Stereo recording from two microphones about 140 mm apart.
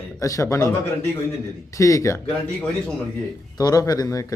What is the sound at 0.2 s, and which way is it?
Speech, 25° left (ahead or behind).